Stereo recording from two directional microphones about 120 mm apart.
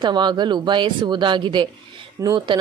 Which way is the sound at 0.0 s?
40° right (ahead or behind).